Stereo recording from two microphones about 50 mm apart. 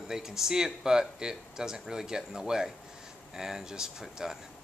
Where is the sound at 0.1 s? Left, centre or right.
Centre.